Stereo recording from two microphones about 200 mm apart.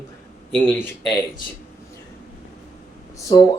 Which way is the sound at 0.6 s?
5° left (ahead or behind).